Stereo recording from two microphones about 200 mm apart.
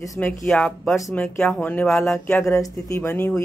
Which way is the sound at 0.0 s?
15° left (ahead or behind).